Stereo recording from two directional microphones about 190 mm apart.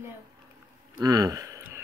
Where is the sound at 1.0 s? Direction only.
20° right (ahead or behind).